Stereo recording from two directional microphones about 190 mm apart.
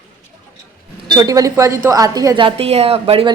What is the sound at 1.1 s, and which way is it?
Speech, 20° right (ahead or behind).